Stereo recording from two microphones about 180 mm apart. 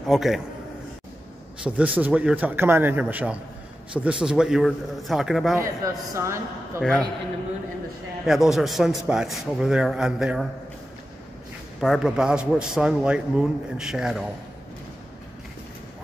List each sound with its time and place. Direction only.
0.0 s a man's voice: centre (ahead or behind)
1.6 s a man's voice: 10° right (ahead or behind)
5.8 s a woman's voice: 20° right (ahead or behind)
6.8 s a man's voice: 5° left (ahead or behind)
8.3 s a man's voice: centre (ahead or behind)
11.8 s a man's voice: centre (ahead or behind)